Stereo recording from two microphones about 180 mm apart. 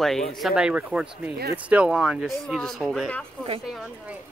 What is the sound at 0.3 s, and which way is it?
Speech, centre (ahead or behind).